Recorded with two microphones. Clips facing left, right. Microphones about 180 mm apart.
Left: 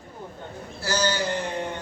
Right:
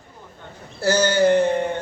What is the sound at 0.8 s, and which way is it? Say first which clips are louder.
Speech: right 8 dB; 55° right (ahead or behind).